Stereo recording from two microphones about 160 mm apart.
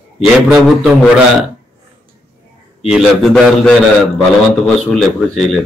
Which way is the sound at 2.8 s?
Centre (ahead or behind).